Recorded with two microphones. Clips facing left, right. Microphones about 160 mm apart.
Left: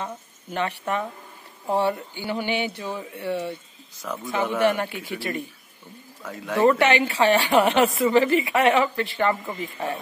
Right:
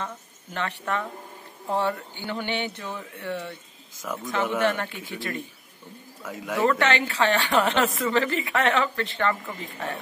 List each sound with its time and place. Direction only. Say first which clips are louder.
0.0 s a woman's voice: left 2 dB; 15° left (ahead or behind)
4.1 s a man's voice: left 1 dB; 10° right (ahead or behind)
4.6 s a woman's voice: left 3 dB; 15° left (ahead or behind)
6.2 s a man's voice: left 2 dB; 10° right (ahead or behind)
6.6 s a woman's voice: left 4 dB; 15° left (ahead or behind)